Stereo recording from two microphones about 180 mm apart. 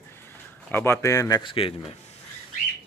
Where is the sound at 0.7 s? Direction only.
10° left (ahead or behind); by 2.0 s 30° left (ahead or behind).